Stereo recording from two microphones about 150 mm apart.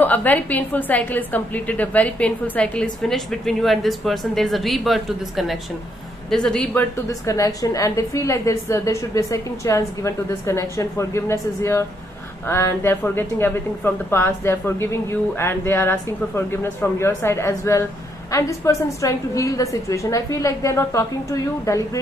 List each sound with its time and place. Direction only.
0.0 s a woman's voice: 10° left (ahead or behind)
7.1 s a woman's voice: 20° left (ahead or behind)